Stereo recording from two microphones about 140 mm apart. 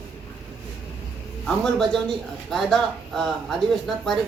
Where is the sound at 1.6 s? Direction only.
5° left (ahead or behind).